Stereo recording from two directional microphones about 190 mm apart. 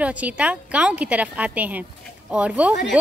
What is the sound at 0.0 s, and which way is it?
A woman's voice, 5° right (ahead or behind).